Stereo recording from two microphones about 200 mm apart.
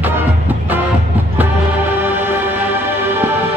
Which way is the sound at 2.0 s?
10° right (ahead or behind).